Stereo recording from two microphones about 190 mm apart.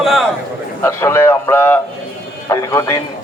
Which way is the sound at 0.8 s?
15° left (ahead or behind).